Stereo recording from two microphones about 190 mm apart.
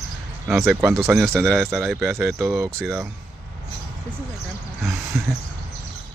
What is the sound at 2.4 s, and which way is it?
Speech, 15° right (ahead or behind).